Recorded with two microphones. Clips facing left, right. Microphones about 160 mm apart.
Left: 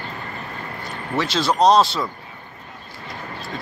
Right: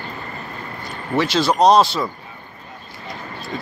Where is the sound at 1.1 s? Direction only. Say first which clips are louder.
Right 3 dB; 5° right (ahead or behind).